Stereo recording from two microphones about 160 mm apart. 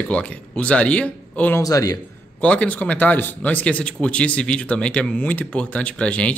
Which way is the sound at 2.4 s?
10° left (ahead or behind).